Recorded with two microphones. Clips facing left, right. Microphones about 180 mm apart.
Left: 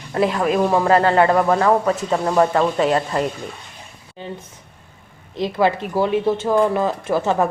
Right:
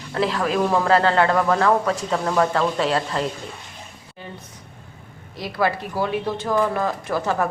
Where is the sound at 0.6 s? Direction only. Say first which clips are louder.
Left 2 dB; 10° left (ahead or behind).